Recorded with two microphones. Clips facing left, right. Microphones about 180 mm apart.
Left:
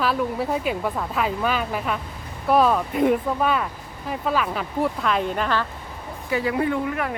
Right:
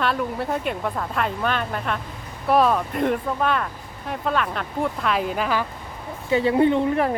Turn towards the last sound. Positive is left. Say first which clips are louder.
# right 5 dB
turn(degrees=-30)  # may be behind; listen again after turning